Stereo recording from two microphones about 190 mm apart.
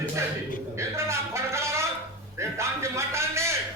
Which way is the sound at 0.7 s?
15° right (ahead or behind).